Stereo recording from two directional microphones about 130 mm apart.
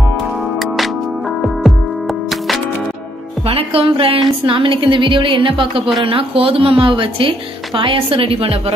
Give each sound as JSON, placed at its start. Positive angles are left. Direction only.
{"t": 0.6, "sound": "music", "side_deg": 0}
{"t": 3.4, "sound": "a woman's voice", "side_deg": -50}